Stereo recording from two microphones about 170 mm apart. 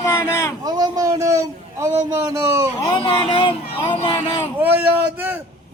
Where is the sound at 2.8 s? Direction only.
25° left (ahead or behind).